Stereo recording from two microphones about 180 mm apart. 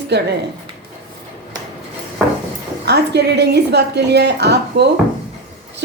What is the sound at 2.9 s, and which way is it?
A woman's voice, 65° right (ahead or behind).